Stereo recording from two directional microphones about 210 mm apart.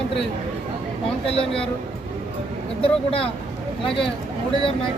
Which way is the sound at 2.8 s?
25° left (ahead or behind).